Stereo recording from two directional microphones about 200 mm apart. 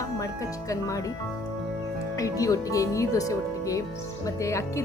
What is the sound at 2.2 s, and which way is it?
A woman's voice, 15° left (ahead or behind).